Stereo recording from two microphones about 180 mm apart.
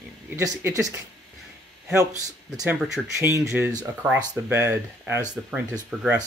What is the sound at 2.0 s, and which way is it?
Speech, 20° right (ahead or behind).